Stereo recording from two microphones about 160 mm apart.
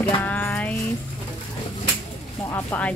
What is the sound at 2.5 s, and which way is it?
Speech, 10° left (ahead or behind).